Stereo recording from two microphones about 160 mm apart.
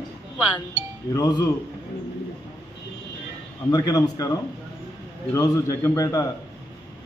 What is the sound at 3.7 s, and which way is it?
A man's voice, 25° left (ahead or behind).